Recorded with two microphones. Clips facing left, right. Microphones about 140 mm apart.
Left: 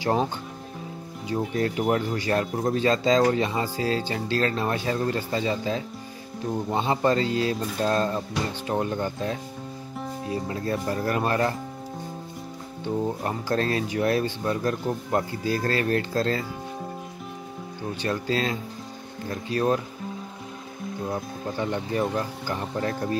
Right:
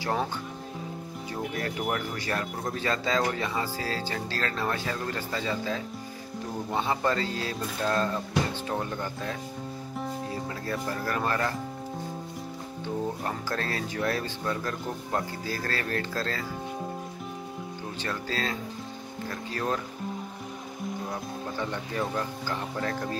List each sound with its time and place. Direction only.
0.0 s speech: 15° left (ahead or behind)
1.6 s speech: 25° left (ahead or behind)
10.5 s speech: 25° left (ahead or behind)
13.2 s speech: 20° left (ahead or behind)
18.0 s speech: 15° left (ahead or behind)
21.5 s speech: 20° left (ahead or behind)